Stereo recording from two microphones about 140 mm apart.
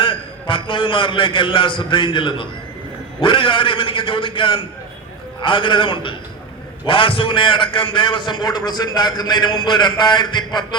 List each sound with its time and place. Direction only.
0.0 s a man's voice: 35° left (ahead or behind)